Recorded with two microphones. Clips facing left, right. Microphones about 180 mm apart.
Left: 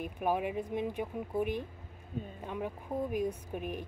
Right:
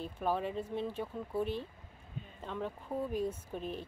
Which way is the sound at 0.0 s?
15° left (ahead or behind).